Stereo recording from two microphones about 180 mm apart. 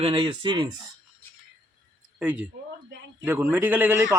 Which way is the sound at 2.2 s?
10° right (ahead or behind).